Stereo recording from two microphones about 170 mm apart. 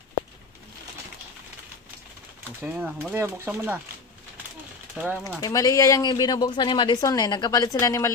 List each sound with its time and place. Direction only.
2.6 s speech: 10° right (ahead or behind)
4.9 s speech: 5° right (ahead or behind)
5.4 s speech: 20° left (ahead or behind)